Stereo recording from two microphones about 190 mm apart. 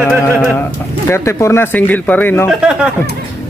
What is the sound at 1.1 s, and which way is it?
Speech, 15° left (ahead or behind).